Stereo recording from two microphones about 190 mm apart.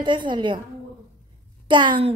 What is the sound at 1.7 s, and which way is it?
Speech, 25° right (ahead or behind).